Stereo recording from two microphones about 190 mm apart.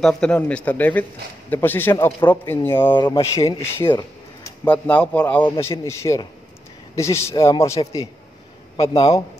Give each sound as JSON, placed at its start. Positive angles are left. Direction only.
{"t": 0.0, "sound": "a man's voice", "side_deg": 5}